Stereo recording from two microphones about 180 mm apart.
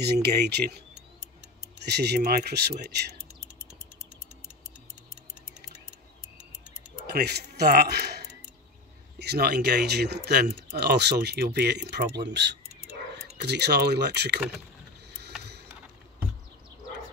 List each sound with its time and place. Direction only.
0.0 s speech: 65° right (ahead or behind)
1.9 s speech: 65° right (ahead or behind)
7.1 s speech: 65° right (ahead or behind)
15.0 s vehicle: 65° right (ahead or behind)
15.4 s a sound: 65° right (ahead or behind)